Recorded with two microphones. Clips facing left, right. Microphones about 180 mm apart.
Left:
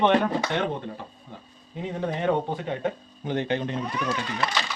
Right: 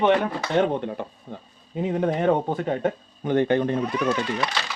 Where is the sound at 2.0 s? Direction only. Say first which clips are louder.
Right 3 dB; 50° right (ahead or behind).